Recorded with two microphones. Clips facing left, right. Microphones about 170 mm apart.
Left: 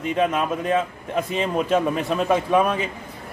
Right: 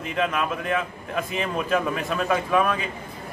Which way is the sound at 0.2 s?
25° left (ahead or behind).